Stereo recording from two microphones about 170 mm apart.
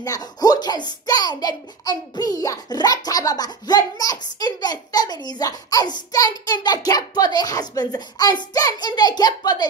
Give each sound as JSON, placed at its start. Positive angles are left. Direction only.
{"t": 0.0, "sound": "a child's voice", "side_deg": 20}